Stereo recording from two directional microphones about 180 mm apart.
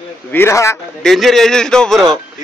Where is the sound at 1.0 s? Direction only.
Centre (ahead or behind).